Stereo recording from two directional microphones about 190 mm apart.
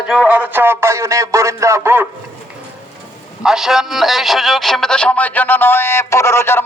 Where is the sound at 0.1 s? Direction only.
5° right (ahead or behind).